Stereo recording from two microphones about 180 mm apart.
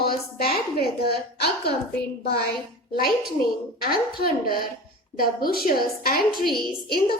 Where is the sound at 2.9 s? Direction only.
55° left (ahead or behind).